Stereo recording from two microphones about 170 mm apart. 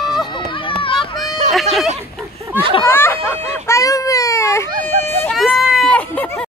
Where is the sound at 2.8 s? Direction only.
15° left (ahead or behind).